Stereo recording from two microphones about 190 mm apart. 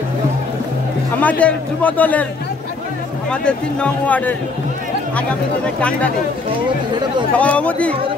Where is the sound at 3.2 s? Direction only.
5° left (ahead or behind).